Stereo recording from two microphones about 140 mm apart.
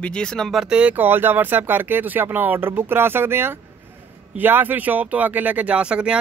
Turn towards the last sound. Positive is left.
turn(degrees=-5)  # may be behind; listen again after turning